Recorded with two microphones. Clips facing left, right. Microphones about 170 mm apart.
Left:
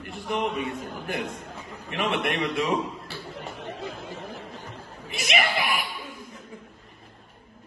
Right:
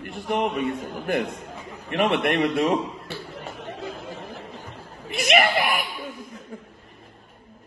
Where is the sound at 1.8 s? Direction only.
55° right (ahead or behind).